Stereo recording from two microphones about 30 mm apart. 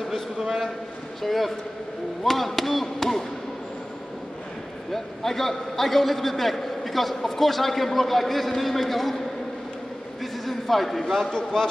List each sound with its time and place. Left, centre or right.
1.2 s a man's voice: centre
2.2 s chop: centre
4.9 s a man's voice: centre
10.2 s a sound: centre
11.2 s a man's voice: centre